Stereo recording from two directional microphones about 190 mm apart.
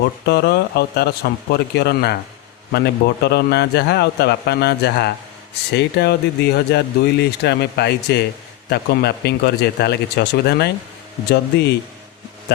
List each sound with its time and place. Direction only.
0.3 s speech: 60° left (ahead or behind)